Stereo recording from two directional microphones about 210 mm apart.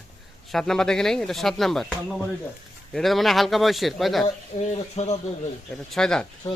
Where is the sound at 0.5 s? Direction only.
Centre (ahead or behind).